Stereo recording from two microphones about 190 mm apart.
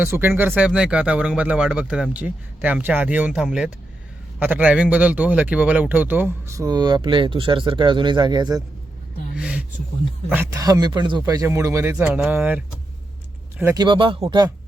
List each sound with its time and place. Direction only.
0.0 s a man's voice: 10° right (ahead or behind)
9.3 s a sound: 5° right (ahead or behind)
10.2 s a man's voice: 10° right (ahead or behind)
13.7 s speech: 25° right (ahead or behind)